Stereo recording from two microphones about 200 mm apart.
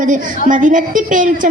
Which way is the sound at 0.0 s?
40° right (ahead or behind).